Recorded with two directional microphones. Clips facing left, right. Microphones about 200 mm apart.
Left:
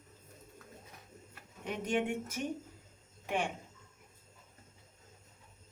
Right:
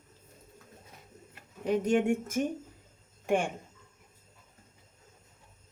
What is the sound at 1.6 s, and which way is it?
Speech, 40° right (ahead or behind).